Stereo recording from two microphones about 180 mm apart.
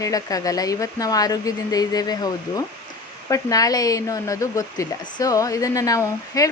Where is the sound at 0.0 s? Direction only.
20° left (ahead or behind).